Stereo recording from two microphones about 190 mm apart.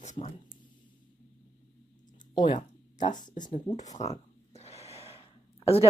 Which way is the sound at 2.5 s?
40° left (ahead or behind).